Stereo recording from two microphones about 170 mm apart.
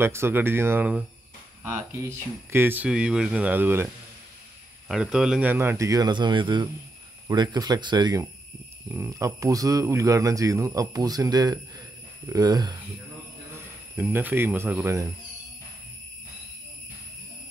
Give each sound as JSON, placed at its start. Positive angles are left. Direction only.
{"t": 0.0, "sound": "speech", "side_deg": -15}
{"t": 13.9, "sound": "speech", "side_deg": -10}